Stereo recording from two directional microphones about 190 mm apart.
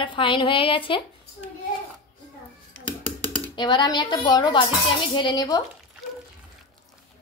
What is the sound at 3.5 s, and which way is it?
A woman's voice, 25° left (ahead or behind).